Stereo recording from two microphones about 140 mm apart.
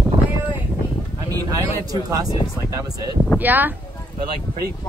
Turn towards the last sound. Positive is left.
turn(degrees=-15)  # may be behind; listen again after turning